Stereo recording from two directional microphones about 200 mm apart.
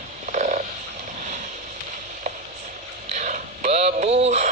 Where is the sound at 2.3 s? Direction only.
35° right (ahead or behind).